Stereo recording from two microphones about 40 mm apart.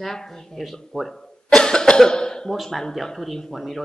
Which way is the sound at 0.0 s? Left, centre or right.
Centre.